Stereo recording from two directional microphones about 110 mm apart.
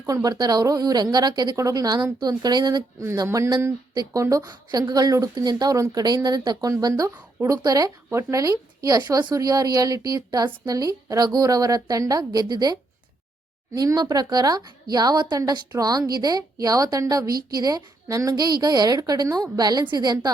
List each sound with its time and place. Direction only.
0.0 s a woman's voice: 35° right (ahead or behind)
3.0 s a woman's voice: 25° right (ahead or behind)
7.1 s speech: 15° right (ahead or behind)
7.5 s a woman's voice: 35° right (ahead or behind)
13.7 s a woman's voice: 40° right (ahead or behind)